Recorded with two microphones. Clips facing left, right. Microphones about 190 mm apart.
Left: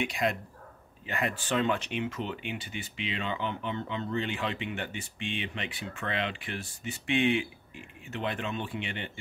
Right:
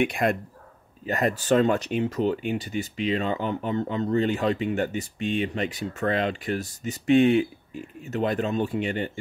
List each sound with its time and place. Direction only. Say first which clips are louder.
0.0 s speech: right 7 dB; 55° right (ahead or behind)
1.0 s speech: right 8 dB; 40° right (ahead or behind)